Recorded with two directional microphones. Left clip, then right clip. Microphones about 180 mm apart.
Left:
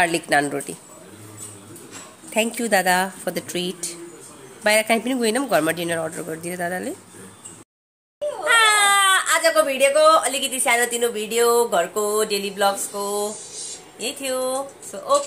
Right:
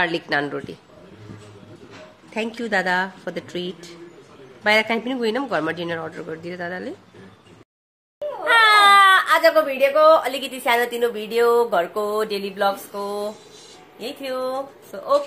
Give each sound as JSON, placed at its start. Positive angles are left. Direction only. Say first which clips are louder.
{"t": 0.0, "sound": "speech", "louder": "left 3 dB", "side_deg": 10}
{"t": 2.3, "sound": "speech", "louder": "left 3 dB", "side_deg": 15}
{"t": 8.5, "sound": "a woman's voice", "louder": "right 3 dB", "side_deg": -20}